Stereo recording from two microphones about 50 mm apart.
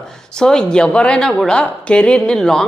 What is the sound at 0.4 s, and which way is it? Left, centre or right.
A woman's voice, centre.